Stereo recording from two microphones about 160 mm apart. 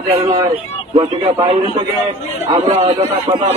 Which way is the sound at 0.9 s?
40° right (ahead or behind).